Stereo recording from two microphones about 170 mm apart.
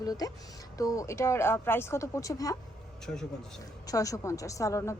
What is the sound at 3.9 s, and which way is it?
A woman's voice, 20° left (ahead or behind).